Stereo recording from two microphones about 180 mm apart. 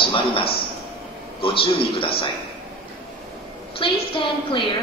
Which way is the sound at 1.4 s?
30° left (ahead or behind).